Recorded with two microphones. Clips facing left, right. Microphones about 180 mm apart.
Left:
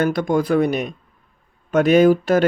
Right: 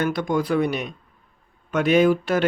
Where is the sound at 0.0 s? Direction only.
45° left (ahead or behind).